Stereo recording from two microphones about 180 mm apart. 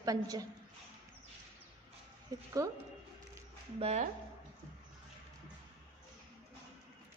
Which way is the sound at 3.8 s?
35° right (ahead or behind).